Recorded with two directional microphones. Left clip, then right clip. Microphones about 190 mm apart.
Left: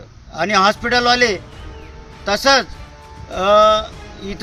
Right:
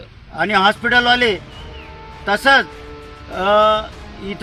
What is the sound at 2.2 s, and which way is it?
Speech, 15° left (ahead or behind).